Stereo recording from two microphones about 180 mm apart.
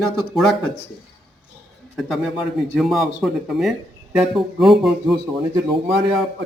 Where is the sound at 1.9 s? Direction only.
Centre (ahead or behind).